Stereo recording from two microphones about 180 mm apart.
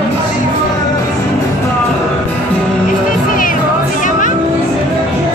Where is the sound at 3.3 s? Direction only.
50° left (ahead or behind).